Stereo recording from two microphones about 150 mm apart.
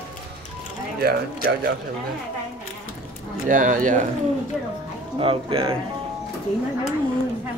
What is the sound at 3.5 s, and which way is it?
Speech, 60° right (ahead or behind).